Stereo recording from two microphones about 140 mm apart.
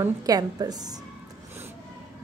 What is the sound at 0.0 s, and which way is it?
A woman's voice, 25° right (ahead or behind).